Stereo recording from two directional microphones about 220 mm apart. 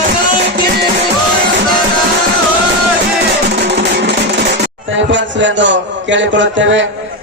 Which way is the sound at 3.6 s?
50° right (ahead or behind).